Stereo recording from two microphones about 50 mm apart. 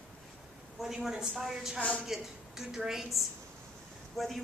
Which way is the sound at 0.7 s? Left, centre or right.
Centre.